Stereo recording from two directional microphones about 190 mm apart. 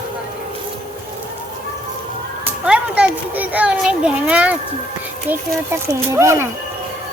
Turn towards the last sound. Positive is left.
turn(degrees=-15)  # may be behind; listen again after turning